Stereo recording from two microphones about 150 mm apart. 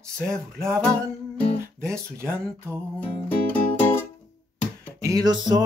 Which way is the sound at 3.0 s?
10° left (ahead or behind).